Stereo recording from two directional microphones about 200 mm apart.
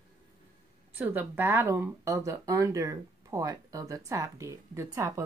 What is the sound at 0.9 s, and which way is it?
Speech, 10° right (ahead or behind).